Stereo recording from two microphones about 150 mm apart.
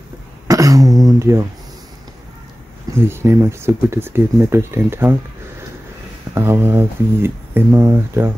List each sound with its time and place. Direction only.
0.5 s a sound: 25° right (ahead or behind)
3.0 s speech: 15° right (ahead or behind)
6.3 s speech: 15° right (ahead or behind)